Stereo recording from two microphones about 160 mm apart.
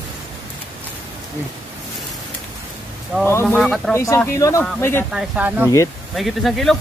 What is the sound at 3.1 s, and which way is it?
Speech, 5° right (ahead or behind).